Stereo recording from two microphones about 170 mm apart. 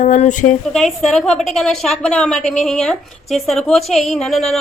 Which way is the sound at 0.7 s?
Centre (ahead or behind).